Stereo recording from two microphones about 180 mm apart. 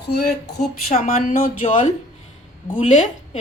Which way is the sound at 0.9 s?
45° left (ahead or behind).